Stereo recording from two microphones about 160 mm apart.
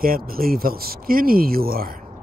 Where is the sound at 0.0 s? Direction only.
65° right (ahead or behind).